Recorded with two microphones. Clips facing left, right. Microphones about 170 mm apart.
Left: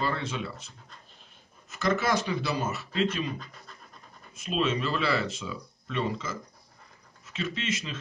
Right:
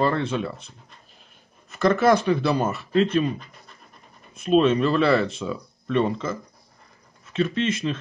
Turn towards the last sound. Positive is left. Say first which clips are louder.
# right 9 dB
turn(degrees=-55)  # may be behind; listen again after turning